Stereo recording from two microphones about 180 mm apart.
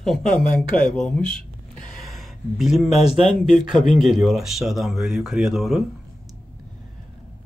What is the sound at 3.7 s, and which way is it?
Speech, centre (ahead or behind).